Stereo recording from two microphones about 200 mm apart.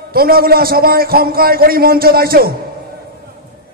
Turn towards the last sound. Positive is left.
turn(degrees=-50)  # may be behind; listen again after turning